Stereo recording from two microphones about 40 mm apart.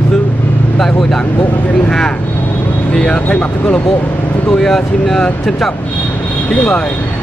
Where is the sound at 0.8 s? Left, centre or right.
Centre.